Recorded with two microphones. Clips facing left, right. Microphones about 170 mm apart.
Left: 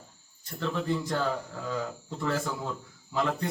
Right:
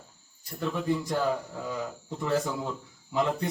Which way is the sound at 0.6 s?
15° right (ahead or behind).